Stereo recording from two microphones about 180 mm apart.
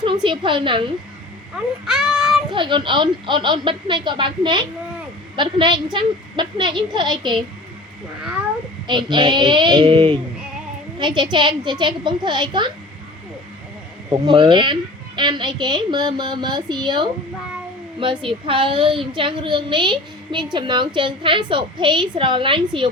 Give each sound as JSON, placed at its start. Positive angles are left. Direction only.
{"t": 0.0, "sound": "speech", "side_deg": -25}
{"t": 1.9, "sound": "child singing", "side_deg": 0}
{"t": 2.5, "sound": "speech", "side_deg": -25}
{"t": 8.9, "sound": "speech", "side_deg": -25}
{"t": 14.1, "sound": "speech", "side_deg": -25}